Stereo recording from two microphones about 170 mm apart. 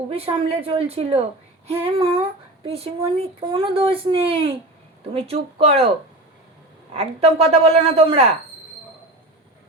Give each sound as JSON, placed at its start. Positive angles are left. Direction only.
{"t": 0.1, "sound": "a woman's voice", "side_deg": -35}
{"t": 6.9, "sound": "a woman's voice", "side_deg": -40}